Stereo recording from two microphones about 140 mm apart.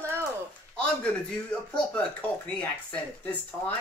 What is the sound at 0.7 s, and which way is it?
Speech, 10° left (ahead or behind).